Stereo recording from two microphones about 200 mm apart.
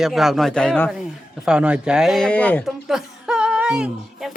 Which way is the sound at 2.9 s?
5° right (ahead or behind).